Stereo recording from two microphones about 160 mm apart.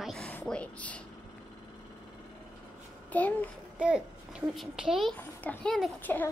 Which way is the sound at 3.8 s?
5° right (ahead or behind).